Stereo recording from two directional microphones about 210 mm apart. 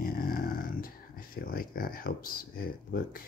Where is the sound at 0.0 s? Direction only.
45° left (ahead or behind).